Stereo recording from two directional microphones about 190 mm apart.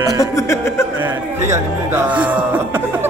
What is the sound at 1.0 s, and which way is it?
Speech, 15° right (ahead or behind).